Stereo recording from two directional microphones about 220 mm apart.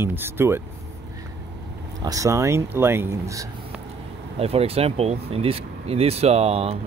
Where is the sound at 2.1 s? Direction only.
15° right (ahead or behind).